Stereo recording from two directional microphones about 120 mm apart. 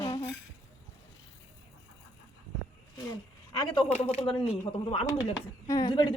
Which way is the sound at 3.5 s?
45° left (ahead or behind).